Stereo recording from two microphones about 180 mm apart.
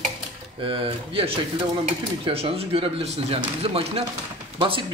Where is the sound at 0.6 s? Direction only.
30° right (ahead or behind).